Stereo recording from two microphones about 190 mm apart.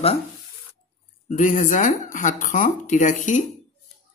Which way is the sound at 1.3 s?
45° left (ahead or behind).